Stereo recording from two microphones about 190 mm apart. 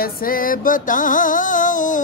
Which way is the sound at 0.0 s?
50° left (ahead or behind).